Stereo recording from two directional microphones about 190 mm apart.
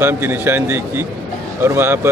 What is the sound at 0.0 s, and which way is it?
Speech, 10° right (ahead or behind).